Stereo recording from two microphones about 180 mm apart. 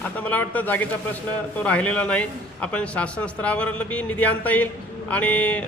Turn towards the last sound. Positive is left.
turn(degrees=5)  # may be behind; listen again after turning